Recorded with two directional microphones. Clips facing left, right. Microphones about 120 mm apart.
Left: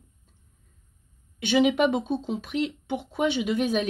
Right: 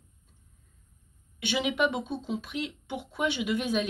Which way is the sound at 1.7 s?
40° left (ahead or behind).